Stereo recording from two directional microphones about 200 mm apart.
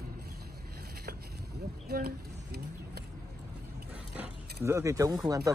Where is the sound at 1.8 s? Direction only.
50° right (ahead or behind).